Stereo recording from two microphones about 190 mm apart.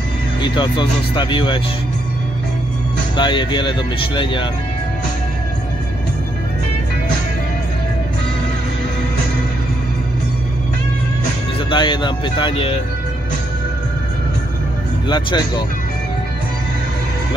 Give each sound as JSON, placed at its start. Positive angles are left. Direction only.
{"t": 0.4, "sound": "speech", "side_deg": 25}
{"t": 3.2, "sound": "speech", "side_deg": 25}
{"t": 11.7, "sound": "speech", "side_deg": 25}
{"t": 15.0, "sound": "speech", "side_deg": 25}